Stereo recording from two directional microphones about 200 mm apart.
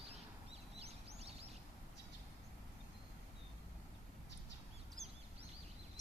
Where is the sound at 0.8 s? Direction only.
30° right (ahead or behind).